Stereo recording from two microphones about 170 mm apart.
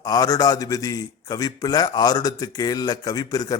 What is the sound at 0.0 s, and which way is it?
Speech, 20° left (ahead or behind).